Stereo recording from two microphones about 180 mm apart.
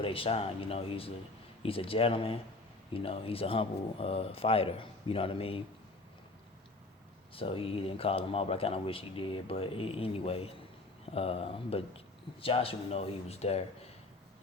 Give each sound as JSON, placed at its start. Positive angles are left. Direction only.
{"t": 0.0, "sound": "speech", "side_deg": 30}
{"t": 7.3, "sound": "speech", "side_deg": 30}